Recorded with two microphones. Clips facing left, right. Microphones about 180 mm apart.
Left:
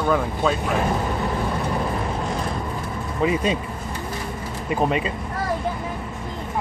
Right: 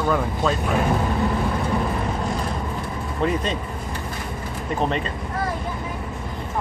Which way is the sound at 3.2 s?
5° left (ahead or behind).